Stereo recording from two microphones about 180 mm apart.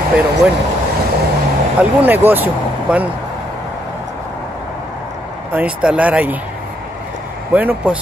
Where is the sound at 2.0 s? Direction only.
10° right (ahead or behind).